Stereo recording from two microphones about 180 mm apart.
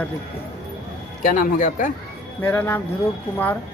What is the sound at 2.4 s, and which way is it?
Speech, 10° left (ahead or behind).